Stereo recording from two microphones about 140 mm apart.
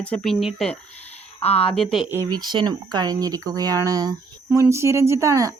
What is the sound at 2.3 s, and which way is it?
Speech, 30° right (ahead or behind).